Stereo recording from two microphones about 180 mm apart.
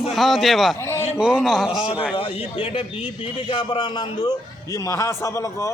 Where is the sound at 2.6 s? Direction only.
30° left (ahead or behind).